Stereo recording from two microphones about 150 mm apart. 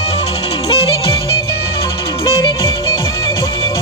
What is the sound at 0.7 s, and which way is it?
Music, 40° left (ahead or behind).